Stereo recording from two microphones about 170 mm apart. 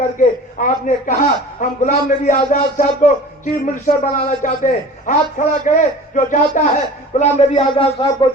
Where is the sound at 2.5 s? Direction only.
50° left (ahead or behind).